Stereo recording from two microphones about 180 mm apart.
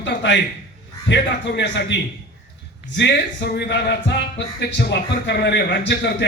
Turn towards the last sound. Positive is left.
turn(degrees=70)  # may be behind; listen again after turning